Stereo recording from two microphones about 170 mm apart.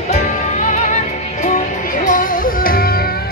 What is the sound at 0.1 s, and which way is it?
Music, 45° left (ahead or behind).